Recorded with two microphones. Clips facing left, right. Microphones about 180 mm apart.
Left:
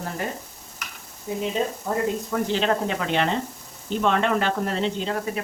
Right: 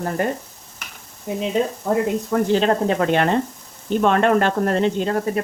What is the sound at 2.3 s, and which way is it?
Speech, 40° right (ahead or behind).